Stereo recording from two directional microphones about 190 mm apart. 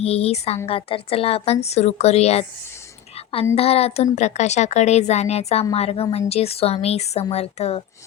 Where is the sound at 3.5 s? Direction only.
30° left (ahead or behind).